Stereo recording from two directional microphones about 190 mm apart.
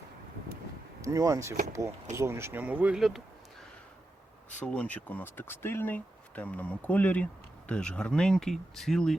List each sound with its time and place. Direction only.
1.0 s speech: 15° right (ahead or behind)
4.6 s speech: 5° left (ahead or behind)